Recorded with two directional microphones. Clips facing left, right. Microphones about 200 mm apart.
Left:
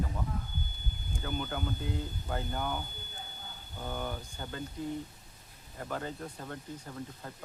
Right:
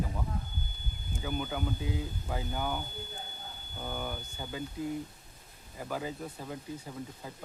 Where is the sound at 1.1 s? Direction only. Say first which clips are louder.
Right 1 dB; 5° right (ahead or behind).